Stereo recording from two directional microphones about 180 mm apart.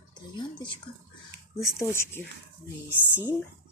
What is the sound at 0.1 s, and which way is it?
Speech, 25° left (ahead or behind).